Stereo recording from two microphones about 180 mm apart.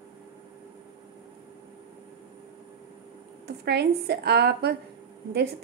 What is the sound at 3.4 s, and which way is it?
A woman's voice, 65° right (ahead or behind).